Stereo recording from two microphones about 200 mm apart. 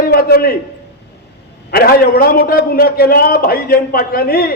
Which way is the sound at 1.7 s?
45° left (ahead or behind).